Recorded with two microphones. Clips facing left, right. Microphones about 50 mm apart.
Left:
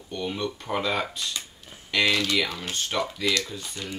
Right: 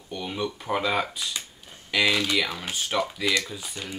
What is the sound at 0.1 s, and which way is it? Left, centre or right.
Speech, centre.